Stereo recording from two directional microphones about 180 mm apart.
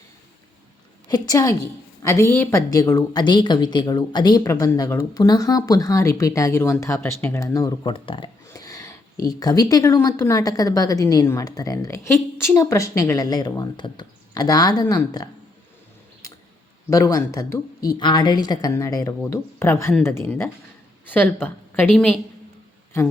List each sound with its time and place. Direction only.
1.0 s speech: 25° left (ahead or behind)
16.9 s a woman's voice: 20° left (ahead or behind); by 22.2 s 5° left (ahead or behind)